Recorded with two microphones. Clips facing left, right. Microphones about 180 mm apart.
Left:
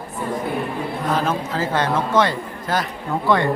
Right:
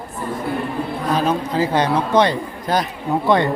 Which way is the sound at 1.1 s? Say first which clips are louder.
Right 4 dB; 15° right (ahead or behind).